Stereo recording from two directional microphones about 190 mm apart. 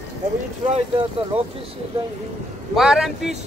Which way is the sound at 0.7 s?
25° right (ahead or behind).